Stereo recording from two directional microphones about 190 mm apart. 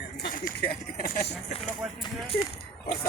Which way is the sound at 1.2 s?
30° left (ahead or behind).